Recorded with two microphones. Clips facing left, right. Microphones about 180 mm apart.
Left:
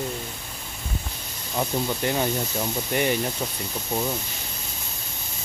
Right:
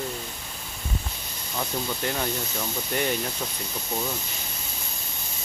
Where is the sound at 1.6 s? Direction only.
20° left (ahead or behind).